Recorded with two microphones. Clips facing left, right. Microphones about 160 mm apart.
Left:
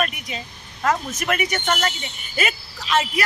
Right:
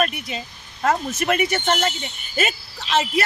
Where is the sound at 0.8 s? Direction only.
30° right (ahead or behind).